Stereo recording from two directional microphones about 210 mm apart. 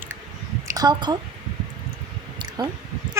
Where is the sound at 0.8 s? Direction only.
20° right (ahead or behind).